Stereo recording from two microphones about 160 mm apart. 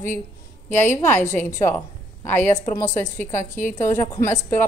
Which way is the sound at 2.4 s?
50° left (ahead or behind).